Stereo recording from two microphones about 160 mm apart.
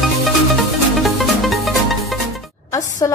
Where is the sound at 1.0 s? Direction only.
Centre (ahead or behind).